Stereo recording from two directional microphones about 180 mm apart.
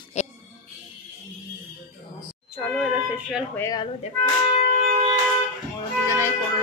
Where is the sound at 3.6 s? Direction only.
20° left (ahead or behind).